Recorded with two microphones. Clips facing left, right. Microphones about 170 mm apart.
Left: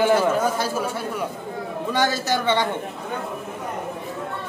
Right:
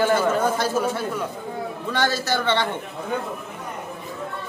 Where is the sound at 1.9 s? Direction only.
15° left (ahead or behind).